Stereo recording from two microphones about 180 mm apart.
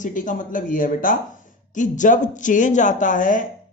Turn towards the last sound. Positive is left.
turn(degrees=45)  # may be behind; listen again after turning